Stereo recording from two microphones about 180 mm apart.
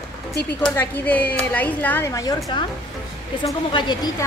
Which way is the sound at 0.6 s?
5° left (ahead or behind).